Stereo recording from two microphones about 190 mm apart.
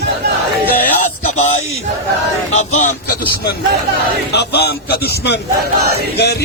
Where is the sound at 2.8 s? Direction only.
50° left (ahead or behind).